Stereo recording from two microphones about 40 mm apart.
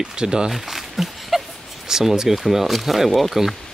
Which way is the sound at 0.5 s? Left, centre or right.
Centre.